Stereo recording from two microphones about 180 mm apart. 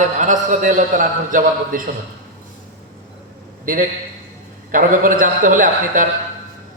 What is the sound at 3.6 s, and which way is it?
A man's voice, 50° right (ahead or behind).